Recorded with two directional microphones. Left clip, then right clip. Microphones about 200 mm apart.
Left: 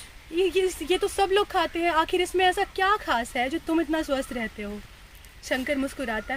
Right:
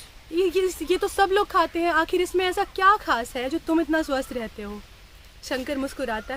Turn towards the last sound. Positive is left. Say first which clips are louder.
# right 1 dB
turn(degrees=-15)  # may be behind; listen again after turning